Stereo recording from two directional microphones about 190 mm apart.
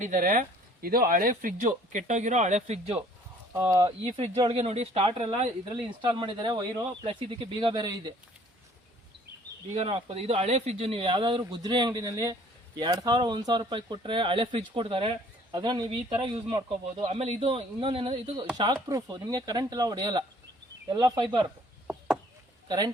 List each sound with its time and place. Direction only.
0.0 s speech: 45° right (ahead or behind)
3.5 s speech: 15° right (ahead or behind)
4.4 s speech: 30° right (ahead or behind)
9.7 s speech: 30° right (ahead or behind)
21.8 s a sound: 5° right (ahead or behind)